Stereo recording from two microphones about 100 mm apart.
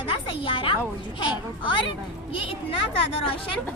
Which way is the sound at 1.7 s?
60° left (ahead or behind).